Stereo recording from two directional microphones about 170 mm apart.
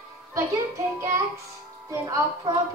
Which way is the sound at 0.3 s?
20° right (ahead or behind).